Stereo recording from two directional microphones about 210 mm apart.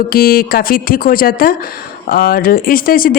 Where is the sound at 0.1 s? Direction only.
45° left (ahead or behind).